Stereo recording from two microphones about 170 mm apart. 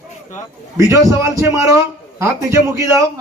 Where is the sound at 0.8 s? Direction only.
20° right (ahead or behind).